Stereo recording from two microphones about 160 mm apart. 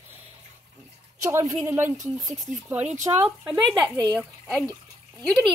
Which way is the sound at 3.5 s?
25° right (ahead or behind).